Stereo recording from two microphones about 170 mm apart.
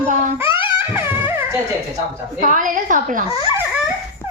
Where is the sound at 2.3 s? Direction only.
50° right (ahead or behind).